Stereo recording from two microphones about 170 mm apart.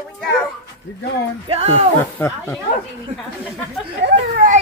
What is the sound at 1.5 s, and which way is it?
Speech, 40° right (ahead or behind).